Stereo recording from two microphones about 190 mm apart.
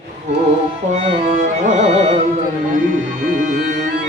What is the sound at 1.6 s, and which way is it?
Music, 40° right (ahead or behind).